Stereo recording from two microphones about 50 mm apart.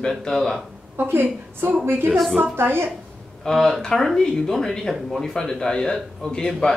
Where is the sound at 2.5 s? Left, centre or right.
Right.